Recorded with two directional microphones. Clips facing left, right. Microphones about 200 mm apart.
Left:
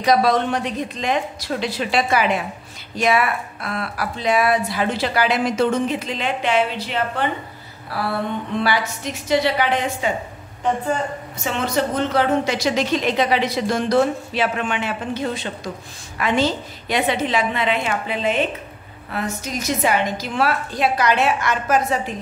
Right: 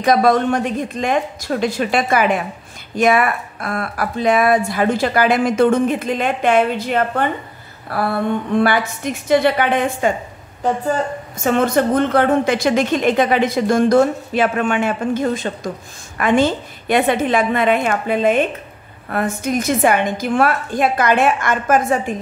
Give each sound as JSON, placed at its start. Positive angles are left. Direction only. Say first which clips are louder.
{"t": 0.0, "sound": "a woman's voice", "louder": "right 3 dB", "side_deg": -50}
{"t": 8.5, "sound": "a woman's voice", "louder": "right 4 dB", "side_deg": -55}
{"t": 10.6, "sound": "speech", "louder": "right 2 dB", "side_deg": -40}
{"t": 11.4, "sound": "a woman's voice", "louder": "right 7 dB", "side_deg": -50}